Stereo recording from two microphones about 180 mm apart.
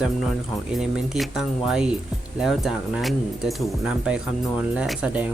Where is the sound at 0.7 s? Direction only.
Centre (ahead or behind).